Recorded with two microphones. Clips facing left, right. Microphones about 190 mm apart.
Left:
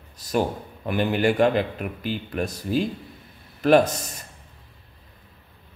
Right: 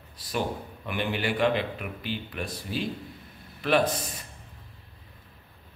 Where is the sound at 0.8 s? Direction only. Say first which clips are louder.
Left 8 dB; 45° left (ahead or behind).